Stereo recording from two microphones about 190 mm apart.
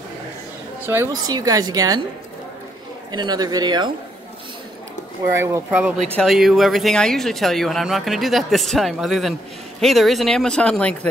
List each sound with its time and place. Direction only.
0.8 s a woman's voice: 15° right (ahead or behind)
3.1 s a woman's voice: 20° right (ahead or behind)
5.4 s speech: 10° right (ahead or behind)
6.1 s speech: centre (ahead or behind)